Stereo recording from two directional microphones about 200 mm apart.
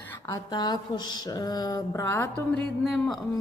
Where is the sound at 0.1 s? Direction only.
15° left (ahead or behind).